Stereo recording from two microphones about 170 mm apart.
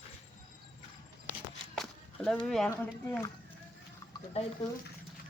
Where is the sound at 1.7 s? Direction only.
5° left (ahead or behind).